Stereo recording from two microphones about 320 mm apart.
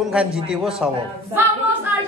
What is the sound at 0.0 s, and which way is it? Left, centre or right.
Speech, centre.